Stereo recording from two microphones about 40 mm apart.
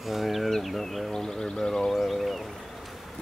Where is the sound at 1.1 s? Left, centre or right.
Centre.